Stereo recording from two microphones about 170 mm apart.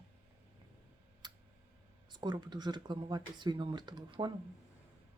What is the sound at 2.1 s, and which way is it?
Speech, 25° right (ahead or behind).